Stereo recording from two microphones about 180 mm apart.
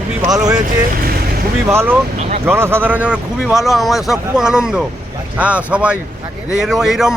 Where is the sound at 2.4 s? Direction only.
15° right (ahead or behind).